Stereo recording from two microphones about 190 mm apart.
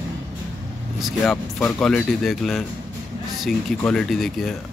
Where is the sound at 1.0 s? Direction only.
Centre (ahead or behind).